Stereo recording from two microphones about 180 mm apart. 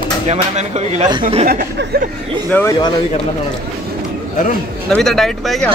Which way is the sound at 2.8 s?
25° left (ahead or behind).